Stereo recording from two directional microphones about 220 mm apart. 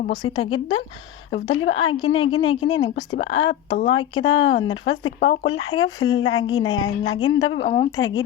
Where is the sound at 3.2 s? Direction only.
65° left (ahead or behind).